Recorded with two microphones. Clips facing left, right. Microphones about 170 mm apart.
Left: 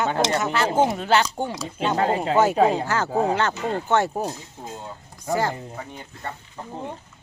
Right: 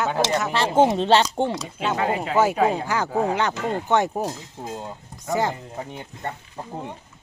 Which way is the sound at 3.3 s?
15° right (ahead or behind).